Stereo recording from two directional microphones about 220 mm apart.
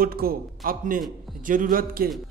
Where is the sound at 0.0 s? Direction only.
40° right (ahead or behind).